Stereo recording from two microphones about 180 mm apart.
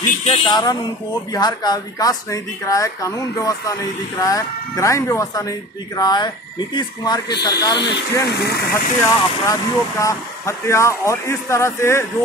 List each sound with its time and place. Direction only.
0.2 s speech: 25° left (ahead or behind)
7.8 s speech: 70° left (ahead or behind)
9.0 s speech: 15° left (ahead or behind)